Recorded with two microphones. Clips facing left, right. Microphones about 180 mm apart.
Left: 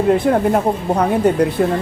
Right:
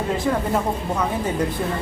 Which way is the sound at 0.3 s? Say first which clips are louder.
Left 7 dB; 60° left (ahead or behind).